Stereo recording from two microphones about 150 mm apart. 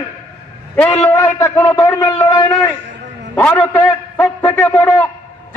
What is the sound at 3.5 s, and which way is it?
A man's voice, 15° left (ahead or behind).